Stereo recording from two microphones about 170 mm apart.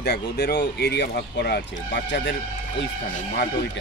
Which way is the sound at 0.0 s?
70° left (ahead or behind).